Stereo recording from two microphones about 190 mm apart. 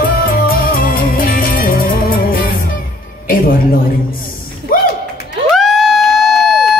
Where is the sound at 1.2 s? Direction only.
50° left (ahead or behind).